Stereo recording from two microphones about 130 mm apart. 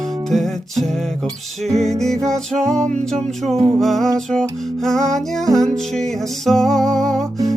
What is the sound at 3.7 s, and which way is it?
Music, centre (ahead or behind).